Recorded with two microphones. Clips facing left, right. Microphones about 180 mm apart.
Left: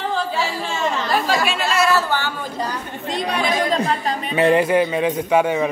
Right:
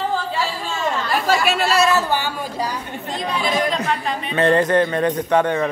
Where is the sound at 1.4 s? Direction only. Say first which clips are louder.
Right 3 dB; 40° right (ahead or behind).